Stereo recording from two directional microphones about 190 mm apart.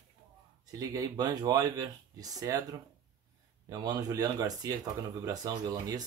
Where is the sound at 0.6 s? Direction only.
20° right (ahead or behind).